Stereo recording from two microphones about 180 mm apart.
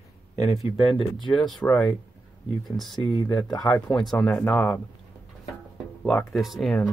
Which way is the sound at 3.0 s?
25° left (ahead or behind).